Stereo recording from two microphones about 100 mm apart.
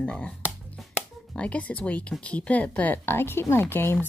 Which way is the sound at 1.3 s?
15° left (ahead or behind).